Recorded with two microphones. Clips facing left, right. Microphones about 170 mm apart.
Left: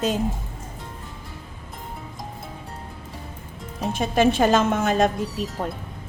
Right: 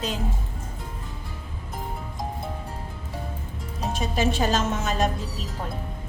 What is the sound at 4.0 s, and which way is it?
A woman's voice, 55° left (ahead or behind).